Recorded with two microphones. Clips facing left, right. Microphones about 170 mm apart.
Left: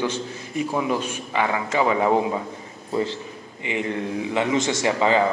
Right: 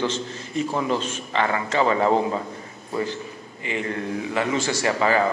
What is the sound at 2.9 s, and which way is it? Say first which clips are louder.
A man's voice: left 2 dB; 25° left (ahead or behind).